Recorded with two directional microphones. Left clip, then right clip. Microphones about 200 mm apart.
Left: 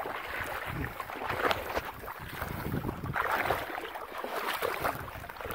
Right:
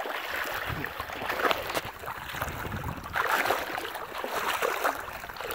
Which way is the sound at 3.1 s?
55° right (ahead or behind).